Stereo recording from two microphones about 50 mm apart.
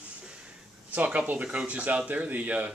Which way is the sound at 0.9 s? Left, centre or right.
Right.